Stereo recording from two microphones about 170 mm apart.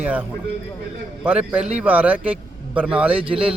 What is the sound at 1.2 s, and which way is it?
A man's voice, 10° right (ahead or behind).